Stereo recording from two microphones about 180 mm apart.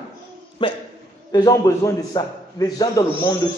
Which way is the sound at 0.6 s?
25° left (ahead or behind).